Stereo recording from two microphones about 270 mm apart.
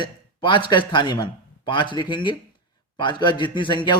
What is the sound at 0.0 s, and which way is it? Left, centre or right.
A man's voice, centre.